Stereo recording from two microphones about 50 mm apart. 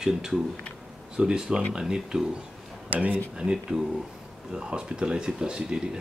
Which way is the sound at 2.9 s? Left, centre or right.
Right.